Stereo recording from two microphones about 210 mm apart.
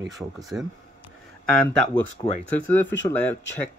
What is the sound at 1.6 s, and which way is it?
Speech, 15° left (ahead or behind).